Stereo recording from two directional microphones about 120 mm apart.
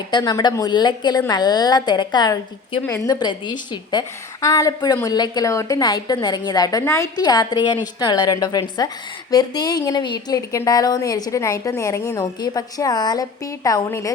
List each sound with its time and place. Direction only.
0.1 s a woman's voice: 35° left (ahead or behind)
4.4 s a woman's voice: 30° left (ahead or behind)